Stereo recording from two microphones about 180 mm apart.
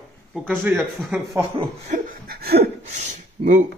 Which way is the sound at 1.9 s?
55° right (ahead or behind).